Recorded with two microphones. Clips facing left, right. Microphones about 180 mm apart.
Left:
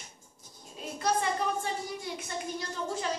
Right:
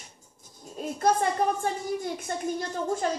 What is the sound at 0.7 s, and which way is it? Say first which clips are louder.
A woman's voice: right 6 dB; 45° right (ahead or behind).